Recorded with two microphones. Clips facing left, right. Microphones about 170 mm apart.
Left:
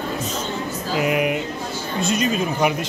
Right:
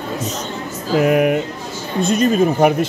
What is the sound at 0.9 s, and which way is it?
Speech, 45° right (ahead or behind).